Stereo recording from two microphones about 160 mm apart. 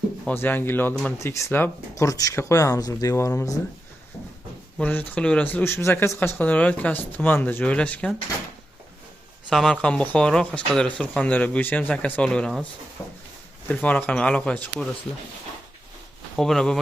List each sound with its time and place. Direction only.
0.3 s speech: 10° left (ahead or behind)
4.8 s speech: 10° left (ahead or behind)
9.5 s speech: 5° left (ahead or behind)
13.0 s a sound: 15° left (ahead or behind)
13.7 s speech: 10° left (ahead or behind)
16.4 s speech: 5° left (ahead or behind)